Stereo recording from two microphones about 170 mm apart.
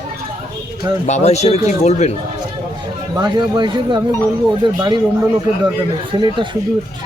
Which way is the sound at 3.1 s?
25° right (ahead or behind).